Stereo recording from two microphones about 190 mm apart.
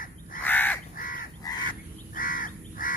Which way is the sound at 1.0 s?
45° left (ahead or behind).